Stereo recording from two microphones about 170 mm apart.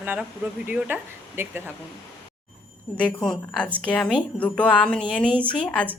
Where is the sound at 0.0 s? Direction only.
10° right (ahead or behind).